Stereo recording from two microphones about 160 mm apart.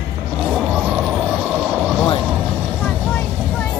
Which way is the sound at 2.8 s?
10° left (ahead or behind).